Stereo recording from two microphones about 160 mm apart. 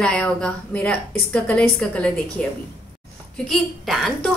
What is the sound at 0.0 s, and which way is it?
A woman's voice, 5° left (ahead or behind).